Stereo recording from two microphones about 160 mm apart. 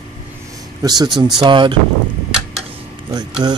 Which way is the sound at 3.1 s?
25° right (ahead or behind).